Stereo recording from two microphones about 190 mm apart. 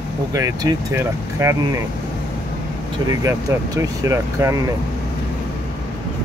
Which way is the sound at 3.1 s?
15° right (ahead or behind).